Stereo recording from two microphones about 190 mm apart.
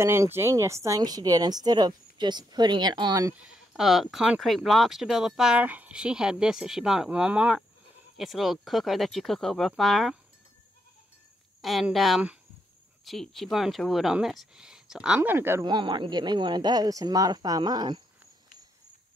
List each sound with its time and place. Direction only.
0.0 s speech: 15° right (ahead or behind)
3.4 s speech: 5° right (ahead or behind)
11.6 s speech: centre (ahead or behind)
15.6 s speech: 25° right (ahead or behind)